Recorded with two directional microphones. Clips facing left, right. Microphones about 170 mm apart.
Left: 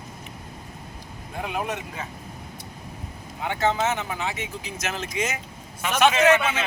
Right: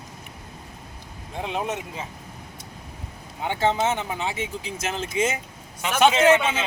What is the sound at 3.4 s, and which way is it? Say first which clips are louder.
Speech: right 1 dB; 25° right (ahead or behind).